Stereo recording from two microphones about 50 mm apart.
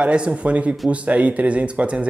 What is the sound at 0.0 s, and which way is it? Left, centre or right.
A woman's voice, right.